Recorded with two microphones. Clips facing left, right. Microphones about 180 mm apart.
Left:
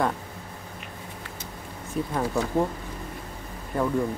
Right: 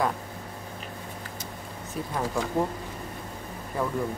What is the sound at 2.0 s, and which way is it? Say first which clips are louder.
Speech: left 5 dB; centre (ahead or behind).